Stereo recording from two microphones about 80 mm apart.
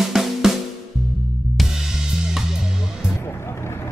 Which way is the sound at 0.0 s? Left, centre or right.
Centre.